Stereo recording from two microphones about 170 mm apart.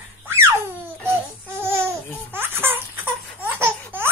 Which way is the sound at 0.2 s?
15° right (ahead or behind).